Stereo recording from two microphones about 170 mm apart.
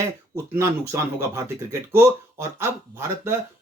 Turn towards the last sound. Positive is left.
turn(degrees=-15)  # may be behind; listen again after turning